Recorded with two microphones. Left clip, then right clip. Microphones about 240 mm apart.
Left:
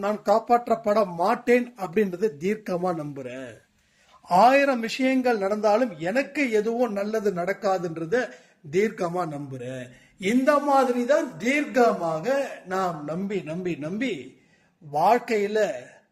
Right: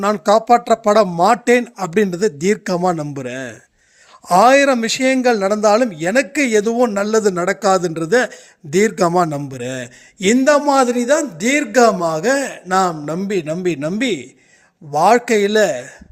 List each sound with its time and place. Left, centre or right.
0.0 s a man's voice: right